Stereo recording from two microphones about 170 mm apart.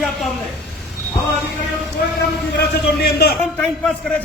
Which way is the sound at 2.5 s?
75° left (ahead or behind).